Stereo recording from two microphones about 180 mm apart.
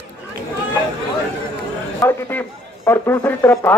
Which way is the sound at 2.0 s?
10° left (ahead or behind).